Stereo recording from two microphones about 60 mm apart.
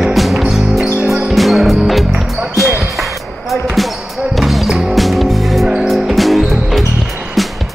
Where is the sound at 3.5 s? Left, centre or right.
Centre.